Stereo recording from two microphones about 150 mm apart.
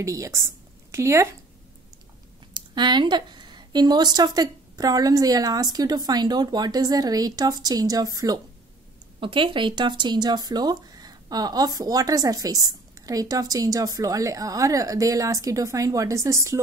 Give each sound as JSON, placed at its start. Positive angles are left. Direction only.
{"t": 0.0, "sound": "speech", "side_deg": -20}
{"t": 2.5, "sound": "speech", "side_deg": -30}